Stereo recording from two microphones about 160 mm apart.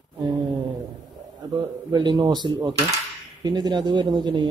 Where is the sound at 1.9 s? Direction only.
25° right (ahead or behind).